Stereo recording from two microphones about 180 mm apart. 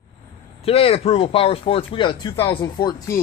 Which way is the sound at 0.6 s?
30° left (ahead or behind).